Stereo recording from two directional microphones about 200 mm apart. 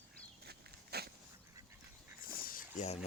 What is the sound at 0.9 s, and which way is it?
Dog, 50° right (ahead or behind).